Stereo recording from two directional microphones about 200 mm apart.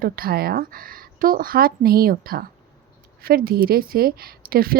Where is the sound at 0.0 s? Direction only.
50° right (ahead or behind).